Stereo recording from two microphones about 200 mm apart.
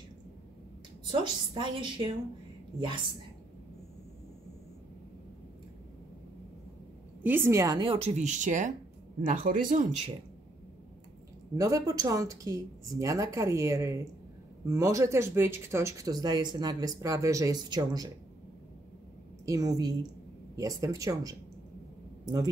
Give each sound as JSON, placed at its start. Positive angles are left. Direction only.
{"t": 1.1, "sound": "a woman's voice", "side_deg": -25}
{"t": 7.2, "sound": "a woman's voice", "side_deg": -10}
{"t": 11.5, "sound": "speech", "side_deg": -15}
{"t": 19.4, "sound": "speech", "side_deg": -15}